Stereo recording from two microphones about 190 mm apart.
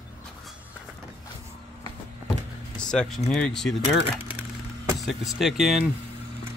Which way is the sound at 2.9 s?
5° left (ahead or behind).